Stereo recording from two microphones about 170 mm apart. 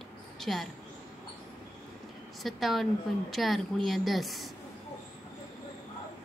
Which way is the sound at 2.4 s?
Centre (ahead or behind).